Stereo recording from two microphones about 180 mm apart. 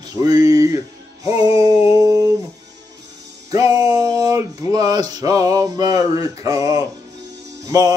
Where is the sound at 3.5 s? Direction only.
20° right (ahead or behind).